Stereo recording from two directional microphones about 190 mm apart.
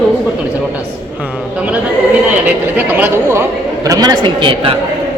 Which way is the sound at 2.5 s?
10° right (ahead or behind).